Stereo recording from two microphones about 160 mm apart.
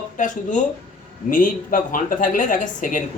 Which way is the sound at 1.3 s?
55° left (ahead or behind).